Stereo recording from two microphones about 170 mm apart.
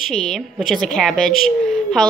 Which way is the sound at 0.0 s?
Centre (ahead or behind).